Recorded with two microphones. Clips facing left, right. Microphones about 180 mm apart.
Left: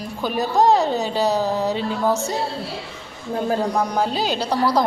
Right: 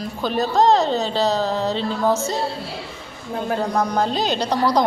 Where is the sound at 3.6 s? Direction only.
10° left (ahead or behind).